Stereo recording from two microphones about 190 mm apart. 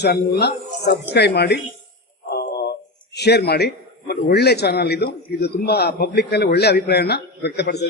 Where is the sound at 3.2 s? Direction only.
60° left (ahead or behind).